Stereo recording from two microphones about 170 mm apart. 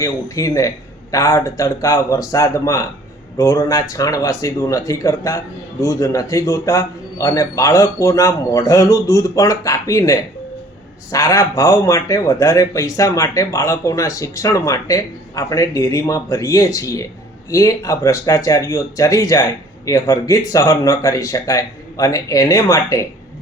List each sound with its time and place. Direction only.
0.0 s speech: 20° left (ahead or behind)